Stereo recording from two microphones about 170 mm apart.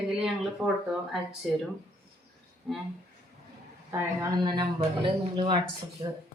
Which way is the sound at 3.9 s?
20° right (ahead or behind).